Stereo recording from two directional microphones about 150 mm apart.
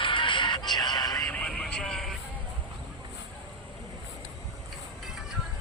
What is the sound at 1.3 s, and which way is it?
Vehicle, 5° left (ahead or behind).